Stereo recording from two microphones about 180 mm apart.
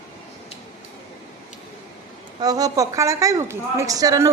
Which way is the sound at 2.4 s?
20° right (ahead or behind).